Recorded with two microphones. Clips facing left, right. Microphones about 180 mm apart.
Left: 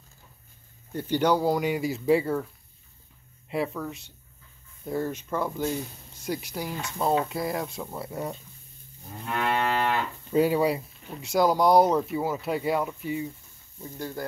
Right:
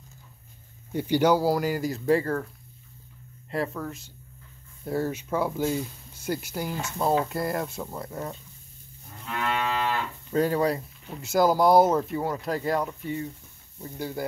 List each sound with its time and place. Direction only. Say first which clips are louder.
0.9 s speech: right 2 dB; 10° right (ahead or behind)
3.4 s speech: even; 5° left (ahead or behind)
9.5 s moo: left 2 dB; 10° left (ahead or behind)
13.7 s speech: right 2 dB; 5° right (ahead or behind)